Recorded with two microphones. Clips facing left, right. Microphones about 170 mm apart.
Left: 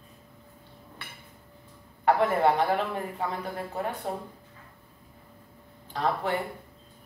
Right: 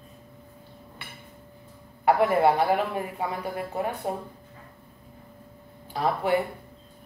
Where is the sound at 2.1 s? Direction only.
10° right (ahead or behind).